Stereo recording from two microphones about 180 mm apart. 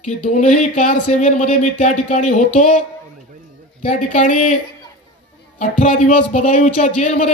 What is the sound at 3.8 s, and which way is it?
Speech, 40° left (ahead or behind).